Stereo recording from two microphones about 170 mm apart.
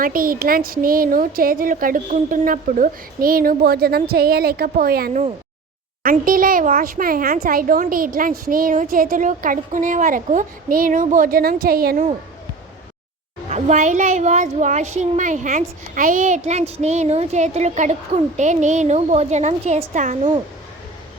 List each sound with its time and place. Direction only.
0.0 s a woman's voice: 55° right (ahead or behind)
13.5 s a woman's voice: 45° right (ahead or behind)